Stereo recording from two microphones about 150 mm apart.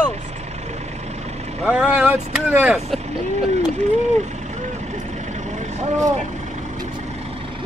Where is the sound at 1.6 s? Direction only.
5° right (ahead or behind).